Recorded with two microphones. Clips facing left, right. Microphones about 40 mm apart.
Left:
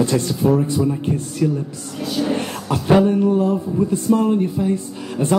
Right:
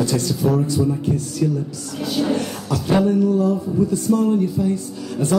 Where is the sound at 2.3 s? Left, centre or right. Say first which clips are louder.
Even; left.